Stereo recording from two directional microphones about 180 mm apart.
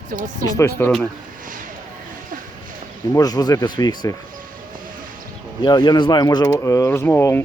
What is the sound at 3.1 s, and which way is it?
Speech, 20° left (ahead or behind).